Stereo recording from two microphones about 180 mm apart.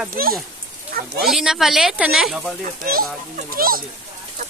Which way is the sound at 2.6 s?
55° right (ahead or behind).